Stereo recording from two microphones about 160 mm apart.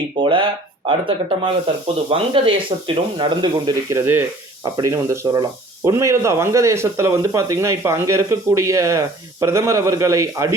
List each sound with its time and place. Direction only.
0.2 s speech: 30° right (ahead or behind)
1.6 s speech: 35° right (ahead or behind)
3.9 s speech: 15° right (ahead or behind)